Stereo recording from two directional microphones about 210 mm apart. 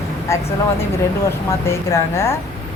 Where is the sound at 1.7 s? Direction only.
10° left (ahead or behind).